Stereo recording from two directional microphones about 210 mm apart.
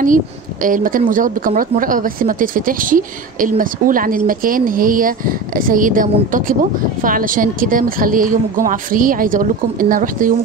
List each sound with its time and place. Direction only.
0.0 s a woman's voice: 40° right (ahead or behind)